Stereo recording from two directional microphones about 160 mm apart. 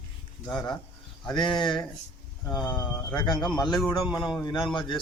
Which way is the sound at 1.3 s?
30° left (ahead or behind).